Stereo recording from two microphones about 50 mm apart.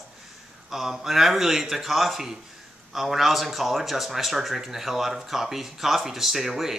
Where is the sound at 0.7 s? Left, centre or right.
Centre.